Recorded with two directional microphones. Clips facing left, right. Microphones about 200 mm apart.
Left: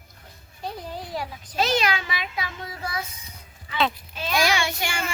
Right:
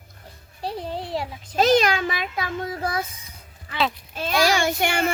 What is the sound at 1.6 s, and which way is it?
A child's voice, 45° right (ahead or behind).